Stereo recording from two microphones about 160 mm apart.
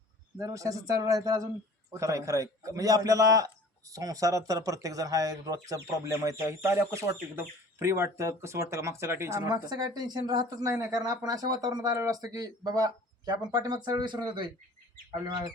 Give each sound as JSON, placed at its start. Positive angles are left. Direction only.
{"t": 0.3, "sound": "a man's voice", "side_deg": -20}